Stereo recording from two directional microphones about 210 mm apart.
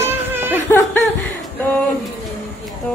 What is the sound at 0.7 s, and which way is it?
Laughter, 10° left (ahead or behind).